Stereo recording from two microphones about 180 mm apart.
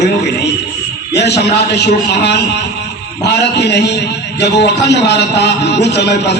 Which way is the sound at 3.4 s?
70° left (ahead or behind).